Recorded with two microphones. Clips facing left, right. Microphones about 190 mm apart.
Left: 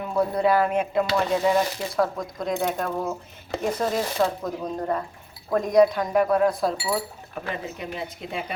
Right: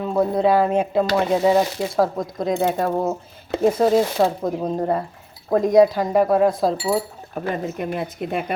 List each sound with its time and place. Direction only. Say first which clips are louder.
0.0 s speech: right 4 dB; 25° right (ahead or behind)
7.3 s speech: right 7 dB; 45° right (ahead or behind)